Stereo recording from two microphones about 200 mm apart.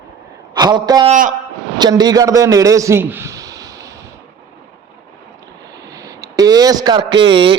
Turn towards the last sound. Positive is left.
turn(degrees=-25)  # may be behind; listen again after turning